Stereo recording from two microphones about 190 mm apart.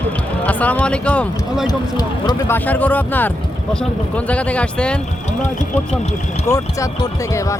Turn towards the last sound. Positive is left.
turn(degrees=15)  # may be behind; listen again after turning